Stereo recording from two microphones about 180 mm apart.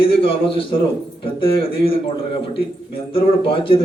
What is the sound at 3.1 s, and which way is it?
Speech, 30° left (ahead or behind).